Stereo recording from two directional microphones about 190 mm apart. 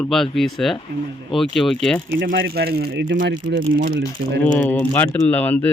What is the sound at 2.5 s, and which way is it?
Speech, 55° right (ahead or behind).